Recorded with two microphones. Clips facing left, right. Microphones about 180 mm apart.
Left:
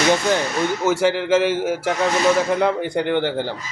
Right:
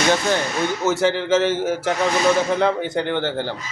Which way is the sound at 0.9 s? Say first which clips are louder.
Left 1 dB; 10° left (ahead or behind).